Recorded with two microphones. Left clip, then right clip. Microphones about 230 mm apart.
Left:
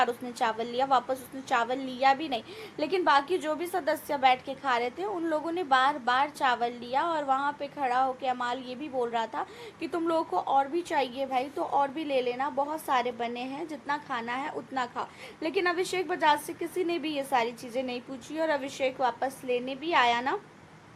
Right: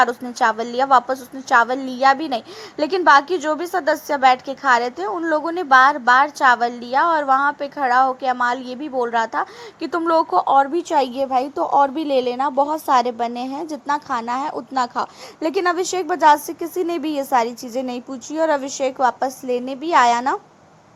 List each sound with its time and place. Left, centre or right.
0.0 s a woman's voice: right